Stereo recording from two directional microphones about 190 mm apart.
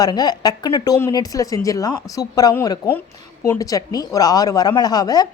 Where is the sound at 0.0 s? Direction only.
20° left (ahead or behind).